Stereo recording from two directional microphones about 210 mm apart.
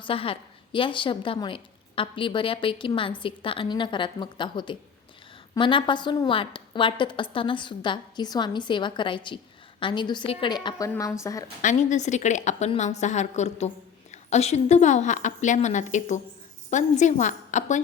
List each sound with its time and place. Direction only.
0.0 s a woman's voice: 25° left (ahead or behind)
11.6 s a woman's voice: 35° left (ahead or behind)